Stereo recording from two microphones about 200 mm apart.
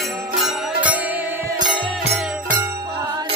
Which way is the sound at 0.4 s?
Centre (ahead or behind).